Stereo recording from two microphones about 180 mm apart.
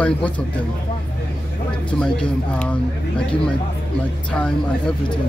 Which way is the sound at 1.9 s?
5° left (ahead or behind).